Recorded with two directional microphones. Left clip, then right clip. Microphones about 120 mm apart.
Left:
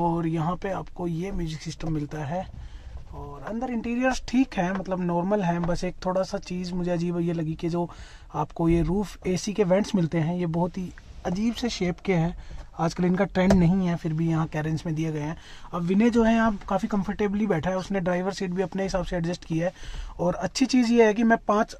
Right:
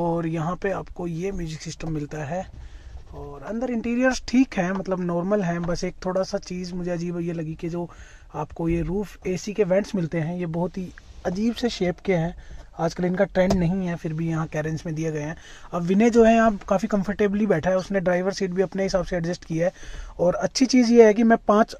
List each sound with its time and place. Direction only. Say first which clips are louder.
0.0 s speech: right 1 dB; 35° right (ahead or behind)
3.5 s speech: right 4 dB; 35° right (ahead or behind)
4.9 s speech: right 2 dB; 20° right (ahead or behind)
6.8 s speech: left 1 dB; 10° right (ahead or behind)
13.9 s speech: left 1 dB; 20° right (ahead or behind)
15.7 s speech: right 4 dB; 55° right (ahead or behind)